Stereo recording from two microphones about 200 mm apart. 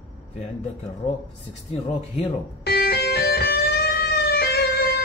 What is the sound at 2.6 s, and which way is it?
Music, 55° left (ahead or behind).